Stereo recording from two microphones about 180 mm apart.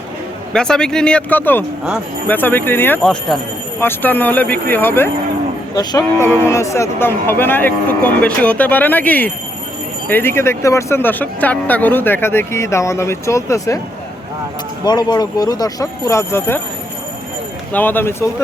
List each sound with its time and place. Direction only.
0.5 s speech: 5° left (ahead or behind)
5.7 s speech: 20° left (ahead or behind)
14.8 s speech: 20° left (ahead or behind)
17.7 s speech: 10° left (ahead or behind)